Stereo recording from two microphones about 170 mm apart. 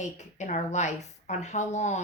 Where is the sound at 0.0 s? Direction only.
45° left (ahead or behind).